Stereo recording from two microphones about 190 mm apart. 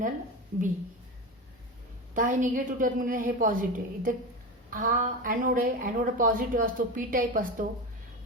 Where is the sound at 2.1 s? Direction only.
45° right (ahead or behind).